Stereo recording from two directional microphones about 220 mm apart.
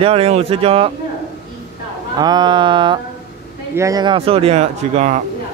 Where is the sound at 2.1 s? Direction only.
20° right (ahead or behind).